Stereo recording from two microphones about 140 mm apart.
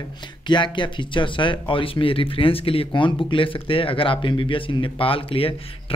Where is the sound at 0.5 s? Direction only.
35° left (ahead or behind).